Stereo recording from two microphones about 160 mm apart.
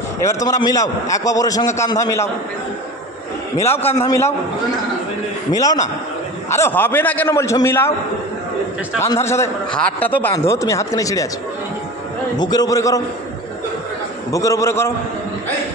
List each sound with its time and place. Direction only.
0.5 s a man's voice: 20° left (ahead or behind)
3.5 s a man's voice: 15° left (ahead or behind)
5.5 s a man's voice: 20° left (ahead or behind)
9.0 s a man's voice: 15° left (ahead or behind)
9.7 s a man's voice: 5° left (ahead or behind)
12.4 s a man's voice: 25° left (ahead or behind)
14.3 s a man's voice: 20° left (ahead or behind)